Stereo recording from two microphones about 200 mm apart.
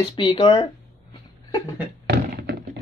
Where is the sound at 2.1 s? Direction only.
50° right (ahead or behind).